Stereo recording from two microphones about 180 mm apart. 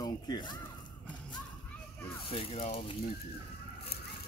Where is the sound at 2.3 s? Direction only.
30° left (ahead or behind).